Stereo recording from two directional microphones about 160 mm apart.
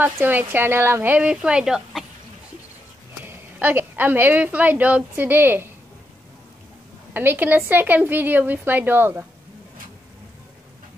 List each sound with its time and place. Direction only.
0.0 s speech: 10° right (ahead or behind)
3.2 s a woman's voice: 10° right (ahead or behind)
7.2 s speech: 10° right (ahead or behind)